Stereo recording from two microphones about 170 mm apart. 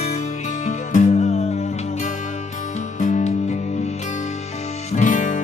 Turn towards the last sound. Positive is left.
turn(degrees=50)  # may be behind; listen again after turning